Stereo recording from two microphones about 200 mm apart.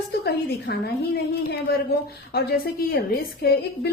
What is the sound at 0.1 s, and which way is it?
A woman's voice, 50° left (ahead or behind).